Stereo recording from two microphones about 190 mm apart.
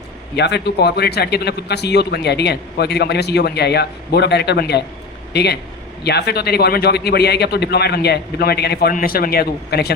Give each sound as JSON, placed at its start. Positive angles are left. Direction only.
{"t": 0.3, "sound": "a man's voice", "side_deg": 60}